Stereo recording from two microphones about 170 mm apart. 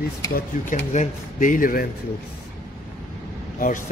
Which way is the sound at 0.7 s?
50° left (ahead or behind).